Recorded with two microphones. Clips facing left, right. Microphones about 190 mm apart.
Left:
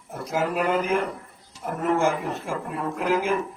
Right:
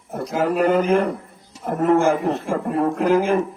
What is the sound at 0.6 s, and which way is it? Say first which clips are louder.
A man's voice: right 9 dB; 50° right (ahead or behind).